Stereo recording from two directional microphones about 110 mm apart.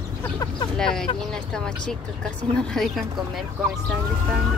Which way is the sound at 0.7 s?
5° left (ahead or behind).